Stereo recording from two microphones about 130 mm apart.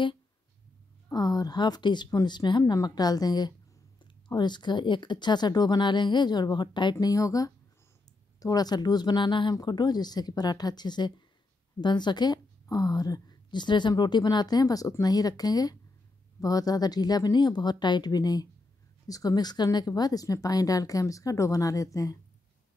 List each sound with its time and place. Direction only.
1.1 s a woman's voice: 30° left (ahead or behind)